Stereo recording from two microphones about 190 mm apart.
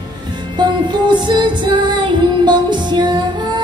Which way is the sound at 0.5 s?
25° right (ahead or behind).